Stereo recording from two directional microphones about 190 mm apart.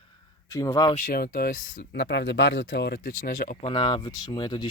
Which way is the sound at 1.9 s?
65° left (ahead or behind).